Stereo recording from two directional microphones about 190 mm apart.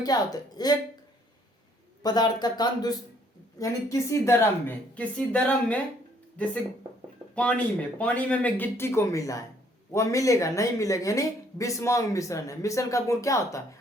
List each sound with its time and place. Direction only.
0.0 s speech: 20° left (ahead or behind)
2.0 s a woman's voice: 20° left (ahead or behind)